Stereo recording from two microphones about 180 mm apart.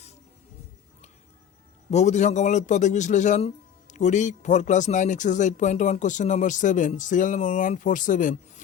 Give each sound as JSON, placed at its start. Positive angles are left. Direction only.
{"t": 1.9, "sound": "speech", "side_deg": 40}